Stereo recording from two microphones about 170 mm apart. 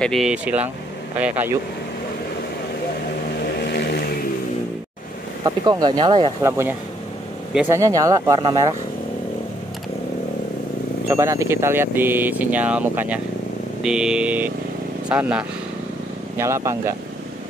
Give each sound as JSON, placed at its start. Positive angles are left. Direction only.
{"t": 0.0, "sound": "speech", "side_deg": 0}
{"t": 3.4, "sound": "vehicle", "side_deg": 75}
{"t": 5.4, "sound": "speech", "side_deg": -25}
{"t": 6.4, "sound": "speech", "side_deg": -15}
{"t": 7.7, "sound": "speech", "side_deg": -20}
{"t": 11.1, "sound": "speech", "side_deg": -15}